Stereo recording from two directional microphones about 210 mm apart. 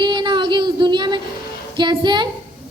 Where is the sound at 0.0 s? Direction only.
20° right (ahead or behind).